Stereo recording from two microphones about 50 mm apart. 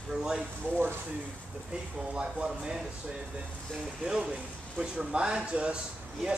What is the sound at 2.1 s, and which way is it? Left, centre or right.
Speech, centre.